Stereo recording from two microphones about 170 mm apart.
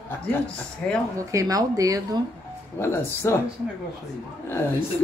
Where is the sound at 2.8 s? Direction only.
15° left (ahead or behind).